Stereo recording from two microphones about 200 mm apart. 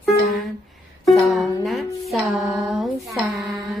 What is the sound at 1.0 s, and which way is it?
Music, centre (ahead or behind).